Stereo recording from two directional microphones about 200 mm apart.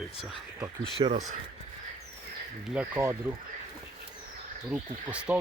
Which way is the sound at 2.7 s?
10° right (ahead or behind).